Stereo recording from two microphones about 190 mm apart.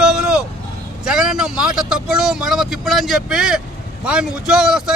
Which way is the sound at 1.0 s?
5° right (ahead or behind).